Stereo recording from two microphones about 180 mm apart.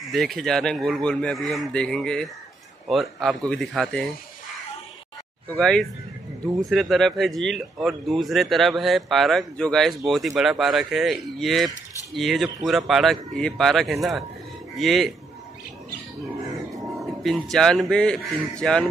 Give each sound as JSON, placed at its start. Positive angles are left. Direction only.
{"t": 0.1, "sound": "speech", "side_deg": 0}
{"t": 5.5, "sound": "speech", "side_deg": 5}
{"t": 17.2, "sound": "speech", "side_deg": 0}